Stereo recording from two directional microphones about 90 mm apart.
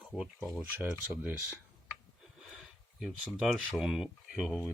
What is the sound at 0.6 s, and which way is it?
Speech, 20° right (ahead or behind).